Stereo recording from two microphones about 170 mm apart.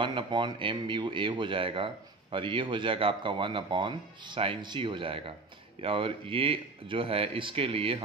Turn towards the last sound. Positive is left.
turn(degrees=-30)  # may be behind; listen again after turning